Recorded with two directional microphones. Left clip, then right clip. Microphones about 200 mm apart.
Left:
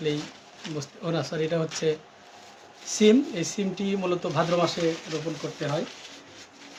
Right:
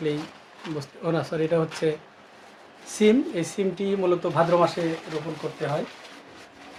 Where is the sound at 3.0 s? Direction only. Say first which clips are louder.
Even; 20° right (ahead or behind).